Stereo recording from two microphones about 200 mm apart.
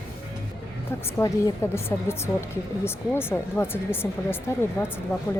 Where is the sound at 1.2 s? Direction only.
15° left (ahead or behind).